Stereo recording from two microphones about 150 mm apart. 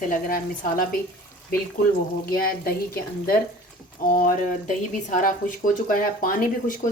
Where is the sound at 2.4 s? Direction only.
85° left.